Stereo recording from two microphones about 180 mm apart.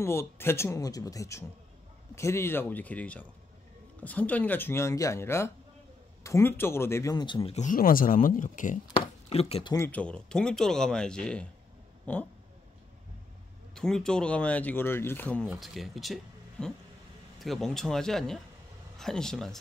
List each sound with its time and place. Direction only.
0.0 s speech: 15° left (ahead or behind)
7.5 s speech: 45° left (ahead or behind)
8.9 s speech: 30° left (ahead or behind)
9.8 s speech: 10° left (ahead or behind)
13.7 s speech: 5° left (ahead or behind)